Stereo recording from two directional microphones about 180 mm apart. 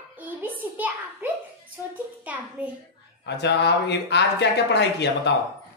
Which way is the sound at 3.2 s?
70° left (ahead or behind).